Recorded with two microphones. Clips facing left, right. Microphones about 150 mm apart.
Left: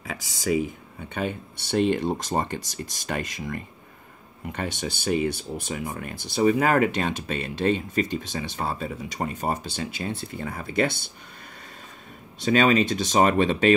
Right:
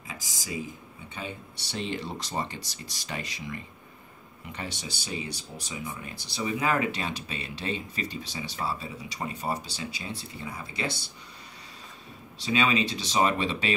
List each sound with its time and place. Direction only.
0.0 s speech: 70° left (ahead or behind)
12.4 s speech: 45° left (ahead or behind)